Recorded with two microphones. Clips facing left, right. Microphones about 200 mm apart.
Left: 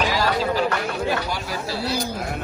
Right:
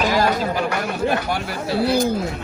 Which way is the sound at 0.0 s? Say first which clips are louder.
Right 4 dB; 50° right (ahead or behind).